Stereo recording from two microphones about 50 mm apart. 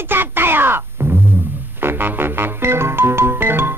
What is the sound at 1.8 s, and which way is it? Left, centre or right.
Music, right.